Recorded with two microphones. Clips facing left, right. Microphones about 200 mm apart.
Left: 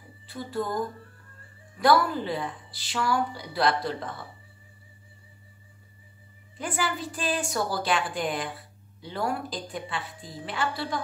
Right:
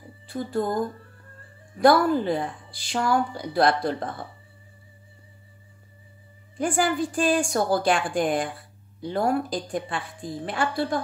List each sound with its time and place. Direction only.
0.3 s speech: 45° right (ahead or behind)
1.8 s speech: 45° right (ahead or behind)
6.6 s speech: 50° right (ahead or behind)